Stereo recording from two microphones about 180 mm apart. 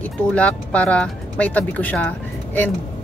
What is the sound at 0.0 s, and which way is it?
Speech, 5° left (ahead or behind).